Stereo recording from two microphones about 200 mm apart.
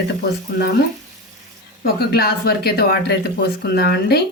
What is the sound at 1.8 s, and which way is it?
Speech, 50° left (ahead or behind).